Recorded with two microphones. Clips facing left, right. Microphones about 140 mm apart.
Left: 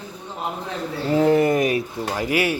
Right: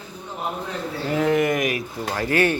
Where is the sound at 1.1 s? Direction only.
30° left (ahead or behind).